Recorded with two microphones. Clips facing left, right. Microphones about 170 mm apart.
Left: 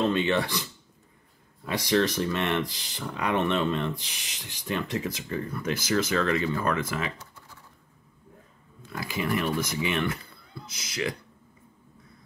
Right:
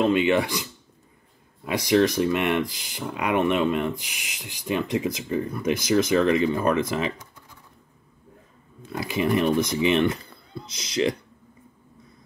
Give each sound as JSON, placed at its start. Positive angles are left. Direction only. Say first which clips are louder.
{"t": 0.0, "sound": "speech", "louder": "right 4 dB", "side_deg": -15}
{"t": 8.9, "sound": "speech", "louder": "right 6 dB", "side_deg": -20}